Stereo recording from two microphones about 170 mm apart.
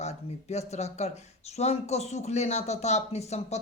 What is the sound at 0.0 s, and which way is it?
Speech, 40° left (ahead or behind).